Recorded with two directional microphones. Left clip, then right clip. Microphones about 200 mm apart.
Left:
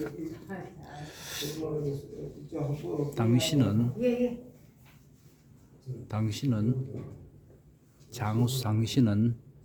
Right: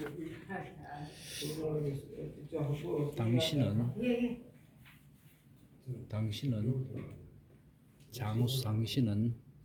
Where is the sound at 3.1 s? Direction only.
15° left (ahead or behind).